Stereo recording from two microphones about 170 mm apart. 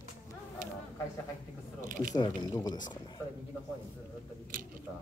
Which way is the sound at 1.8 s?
50° right (ahead or behind).